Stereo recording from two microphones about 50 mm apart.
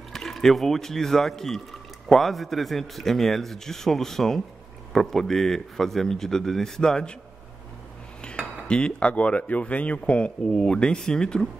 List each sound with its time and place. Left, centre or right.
0.1 s speech: centre
8.2 s speech: centre